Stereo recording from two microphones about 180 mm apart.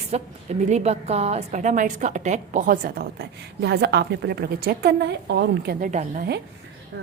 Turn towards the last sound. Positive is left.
turn(degrees=-45)  # may be behind; listen again after turning